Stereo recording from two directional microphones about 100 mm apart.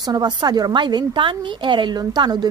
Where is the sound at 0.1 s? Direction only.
45° right (ahead or behind).